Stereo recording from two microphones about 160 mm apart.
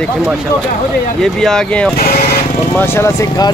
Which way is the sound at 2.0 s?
70° left (ahead or behind).